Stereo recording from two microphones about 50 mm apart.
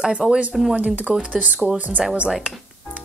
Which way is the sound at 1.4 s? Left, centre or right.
Right.